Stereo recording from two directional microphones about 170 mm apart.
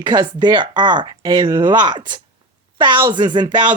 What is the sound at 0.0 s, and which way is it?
Speech, 25° right (ahead or behind).